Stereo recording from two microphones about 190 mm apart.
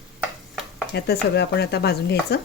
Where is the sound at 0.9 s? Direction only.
60° left (ahead or behind).